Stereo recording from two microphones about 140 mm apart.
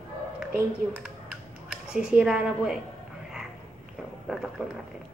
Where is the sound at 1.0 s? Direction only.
5° right (ahead or behind).